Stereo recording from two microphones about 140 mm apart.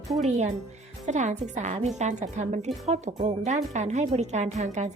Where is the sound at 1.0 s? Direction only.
60° right (ahead or behind).